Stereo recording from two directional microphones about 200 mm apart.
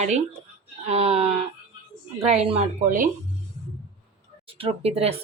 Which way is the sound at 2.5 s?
35° right (ahead or behind).